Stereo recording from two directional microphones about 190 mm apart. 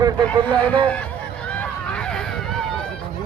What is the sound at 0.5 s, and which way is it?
Speech, 5° left (ahead or behind).